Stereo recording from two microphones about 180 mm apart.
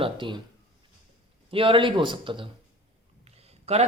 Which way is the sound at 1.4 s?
30° right (ahead or behind).